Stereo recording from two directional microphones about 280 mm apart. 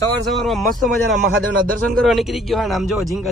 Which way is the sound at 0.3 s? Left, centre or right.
Centre.